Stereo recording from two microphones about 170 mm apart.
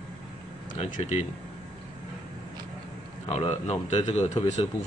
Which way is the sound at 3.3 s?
35° left (ahead or behind).